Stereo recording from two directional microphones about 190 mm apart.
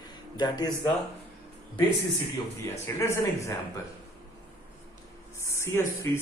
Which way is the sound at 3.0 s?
15° left (ahead or behind).